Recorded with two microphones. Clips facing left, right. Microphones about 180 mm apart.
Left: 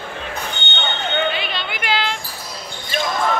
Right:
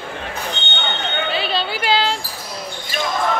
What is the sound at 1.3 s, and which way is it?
Music, 35° right (ahead or behind).